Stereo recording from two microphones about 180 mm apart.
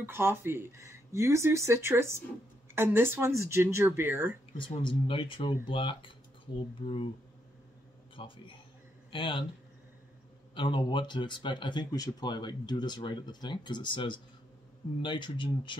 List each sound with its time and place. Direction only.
0.0 s speech: 10° right (ahead or behind)
4.6 s speech: 30° left (ahead or behind)
8.2 s a man's voice: 30° left (ahead or behind)
10.5 s speech: 25° left (ahead or behind)